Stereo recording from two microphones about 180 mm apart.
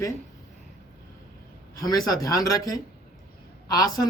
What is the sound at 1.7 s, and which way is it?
A man's voice, 20° left (ahead or behind).